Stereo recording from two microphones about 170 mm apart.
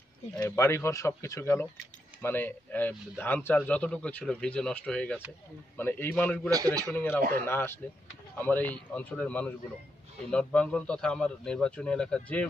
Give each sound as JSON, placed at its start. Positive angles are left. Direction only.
{"t": 0.4, "sound": "a man's voice", "side_deg": 20}
{"t": 6.5, "sound": "a man's voice", "side_deg": -20}
{"t": 6.9, "sound": "a man's voice", "side_deg": 10}